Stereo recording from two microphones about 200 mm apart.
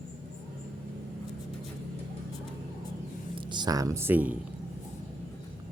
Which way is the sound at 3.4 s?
20° right (ahead or behind).